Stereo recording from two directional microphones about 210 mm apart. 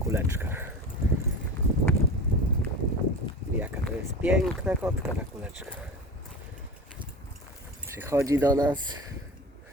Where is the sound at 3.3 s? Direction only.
25° left (ahead or behind).